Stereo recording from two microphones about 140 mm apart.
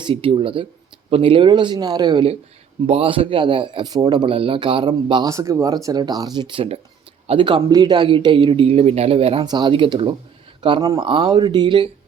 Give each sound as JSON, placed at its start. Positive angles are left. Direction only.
{"t": 0.0, "sound": "speech", "side_deg": -40}
{"t": 9.5, "sound": "speech", "side_deg": -35}